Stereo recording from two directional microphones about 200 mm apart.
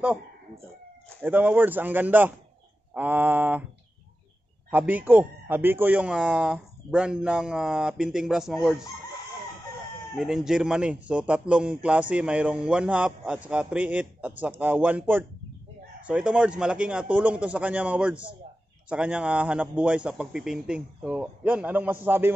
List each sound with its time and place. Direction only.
1.2 s speech: 10° right (ahead or behind)
4.6 s a man's voice: 10° right (ahead or behind)
10.1 s a man's voice: 5° right (ahead or behind)